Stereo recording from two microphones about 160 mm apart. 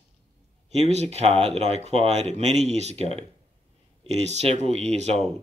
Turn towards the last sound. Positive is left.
turn(degrees=-45)  # may be behind; listen again after turning